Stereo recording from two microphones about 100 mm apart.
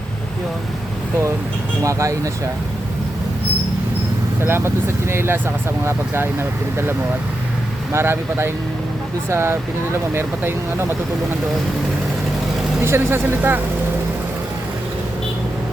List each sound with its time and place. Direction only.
1.8 s speech: 30° right (ahead or behind)
4.4 s speech: 25° right (ahead or behind)
7.9 s speech: 25° right (ahead or behind)
12.8 s speech: 25° right (ahead or behind)